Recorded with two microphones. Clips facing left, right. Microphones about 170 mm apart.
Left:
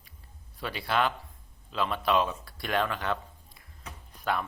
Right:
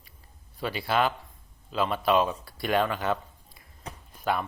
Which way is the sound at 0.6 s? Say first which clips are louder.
Right 2 dB; centre (ahead or behind).